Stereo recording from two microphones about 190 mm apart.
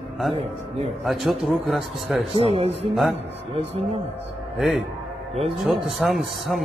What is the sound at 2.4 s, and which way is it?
Speech, 30° right (ahead or behind).